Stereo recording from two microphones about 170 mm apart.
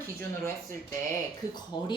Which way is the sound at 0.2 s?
15° left (ahead or behind).